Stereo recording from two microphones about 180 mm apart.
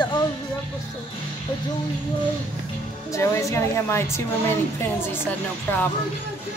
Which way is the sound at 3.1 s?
15° left (ahead or behind).